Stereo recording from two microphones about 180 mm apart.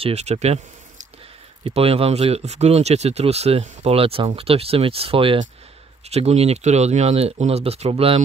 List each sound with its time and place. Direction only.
0.0 s speech: 35° right (ahead or behind)
1.6 s speech: 30° right (ahead or behind)